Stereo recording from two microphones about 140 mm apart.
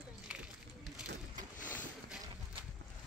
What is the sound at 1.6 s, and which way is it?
Boat, 70° left (ahead or behind).